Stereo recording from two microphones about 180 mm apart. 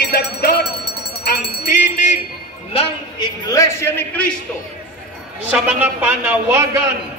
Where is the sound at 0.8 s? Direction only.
65° left (ahead or behind).